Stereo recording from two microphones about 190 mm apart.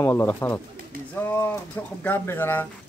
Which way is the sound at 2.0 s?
10° left (ahead or behind).